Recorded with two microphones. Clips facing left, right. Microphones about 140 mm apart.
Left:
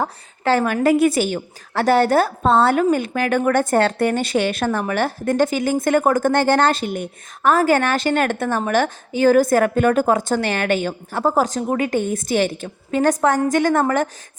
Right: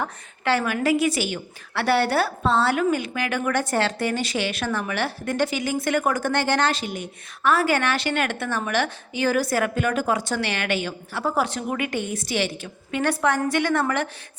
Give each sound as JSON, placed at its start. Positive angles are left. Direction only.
{"t": 0.0, "sound": "a woman's voice", "side_deg": 40}